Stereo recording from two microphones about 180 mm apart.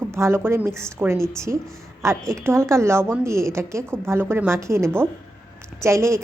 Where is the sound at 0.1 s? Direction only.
15° right (ahead or behind).